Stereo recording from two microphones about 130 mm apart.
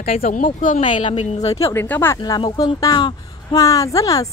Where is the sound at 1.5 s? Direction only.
20° left (ahead or behind).